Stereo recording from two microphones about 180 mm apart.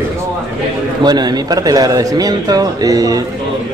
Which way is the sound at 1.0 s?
20° right (ahead or behind).